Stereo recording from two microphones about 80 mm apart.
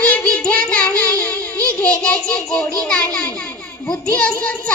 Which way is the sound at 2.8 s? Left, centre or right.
Centre.